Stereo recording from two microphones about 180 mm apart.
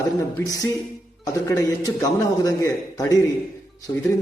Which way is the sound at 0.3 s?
20° left (ahead or behind).